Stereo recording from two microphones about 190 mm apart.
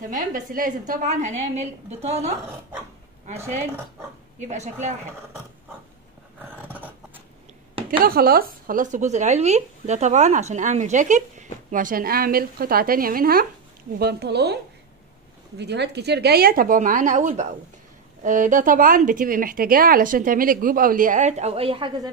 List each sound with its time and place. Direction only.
0.1 s speech: 45° right (ahead or behind)
4.4 s speech: 40° right (ahead or behind)
8.0 s speech: 50° right (ahead or behind); by 22.1 s 25° right (ahead or behind)